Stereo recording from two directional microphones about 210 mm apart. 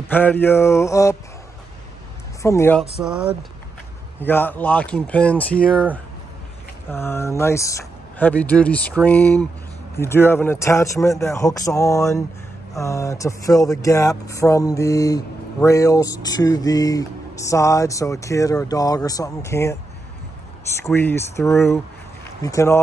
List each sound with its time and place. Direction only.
0.1 s speech: 10° left (ahead or behind)
2.4 s speech: 10° left (ahead or behind)
3.0 s speech: 5° right (ahead or behind)
4.2 s speech: 10° left (ahead or behind)
6.9 s speech: 10° left (ahead or behind)
20.9 s speech: 10° left (ahead or behind)